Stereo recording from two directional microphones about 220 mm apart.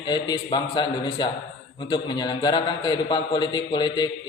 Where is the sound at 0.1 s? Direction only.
20° left (ahead or behind).